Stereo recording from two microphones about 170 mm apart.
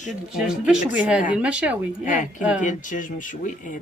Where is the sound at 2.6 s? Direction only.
50° left (ahead or behind).